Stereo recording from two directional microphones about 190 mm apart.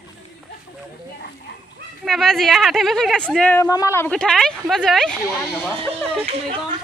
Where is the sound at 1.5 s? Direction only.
65° left (ahead or behind).